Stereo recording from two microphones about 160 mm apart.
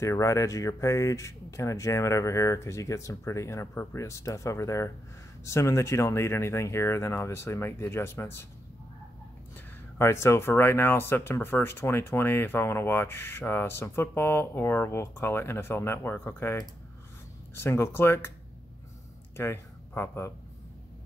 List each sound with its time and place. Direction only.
0.0 s speech: 20° left (ahead or behind)
9.9 s speech: 15° left (ahead or behind)
19.3 s speech: 15° left (ahead or behind)